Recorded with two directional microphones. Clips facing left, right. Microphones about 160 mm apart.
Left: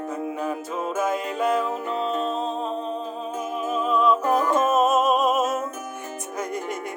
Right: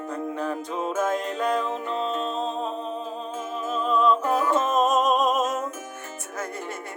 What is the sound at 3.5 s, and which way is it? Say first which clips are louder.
Humming: left 1 dB; 15° left (ahead or behind).